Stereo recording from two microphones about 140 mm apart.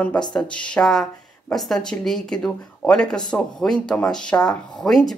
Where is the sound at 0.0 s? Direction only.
5° left (ahead or behind).